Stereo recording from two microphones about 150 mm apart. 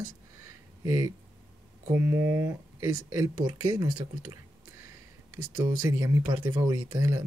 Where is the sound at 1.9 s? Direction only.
15° right (ahead or behind).